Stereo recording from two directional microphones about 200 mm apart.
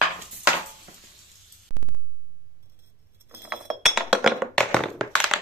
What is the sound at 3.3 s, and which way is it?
Chink, 5° right (ahead or behind).